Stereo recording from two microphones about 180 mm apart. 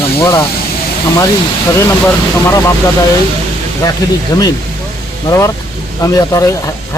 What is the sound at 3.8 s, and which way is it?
Speech, 20° left (ahead or behind).